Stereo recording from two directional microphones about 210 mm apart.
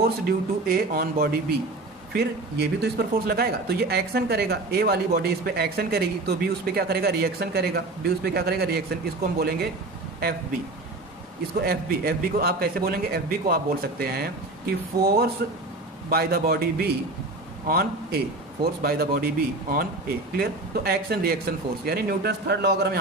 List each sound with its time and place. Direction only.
0.0 s speech: 45° right (ahead or behind)
11.6 s speech: 45° right (ahead or behind)